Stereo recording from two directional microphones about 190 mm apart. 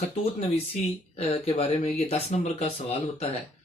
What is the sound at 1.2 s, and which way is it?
Speech, 35° left (ahead or behind).